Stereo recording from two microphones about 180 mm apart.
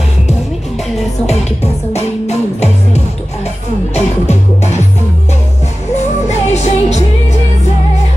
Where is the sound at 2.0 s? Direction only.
35° left (ahead or behind).